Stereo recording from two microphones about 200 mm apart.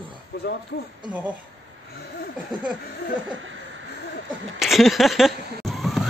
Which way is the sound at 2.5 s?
20° right (ahead or behind).